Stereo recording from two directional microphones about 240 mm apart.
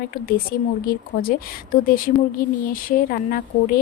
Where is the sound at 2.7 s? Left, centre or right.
Left.